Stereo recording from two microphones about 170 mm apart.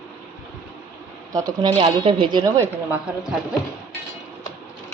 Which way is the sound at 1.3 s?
25° right (ahead or behind).